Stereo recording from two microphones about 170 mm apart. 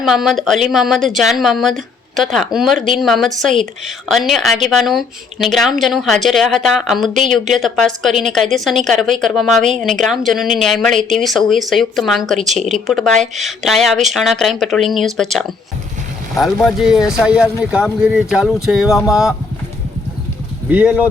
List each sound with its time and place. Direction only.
0.0 s speech: centre (ahead or behind)
9.6 s speech: 45° right (ahead or behind)
10.0 s speech: centre (ahead or behind)
20.7 s speech: 5° right (ahead or behind)